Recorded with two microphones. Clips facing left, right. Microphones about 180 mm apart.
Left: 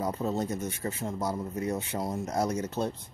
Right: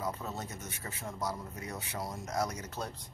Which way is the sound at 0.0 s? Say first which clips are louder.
Left 8 dB; 30° left (ahead or behind).